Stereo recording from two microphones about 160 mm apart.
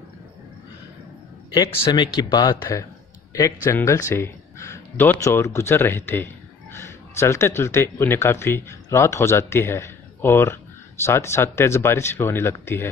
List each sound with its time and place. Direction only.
1.5 s speech: 25° left (ahead or behind)